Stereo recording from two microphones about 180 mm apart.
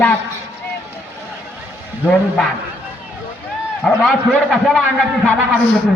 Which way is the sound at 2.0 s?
10° left (ahead or behind).